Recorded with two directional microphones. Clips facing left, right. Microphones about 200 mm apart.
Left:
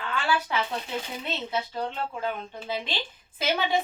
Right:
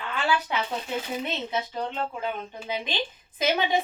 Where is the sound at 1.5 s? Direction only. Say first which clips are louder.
Even; 20° right (ahead or behind).